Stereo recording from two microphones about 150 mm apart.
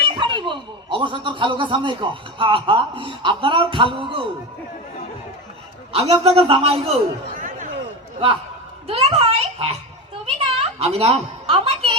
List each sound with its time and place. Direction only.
0.1 s speech: 35° right (ahead or behind)
5.9 s speech: 40° right (ahead or behind)
7.3 s chatter: 65° right (ahead or behind)
8.9 s a woman's voice: 45° right (ahead or behind)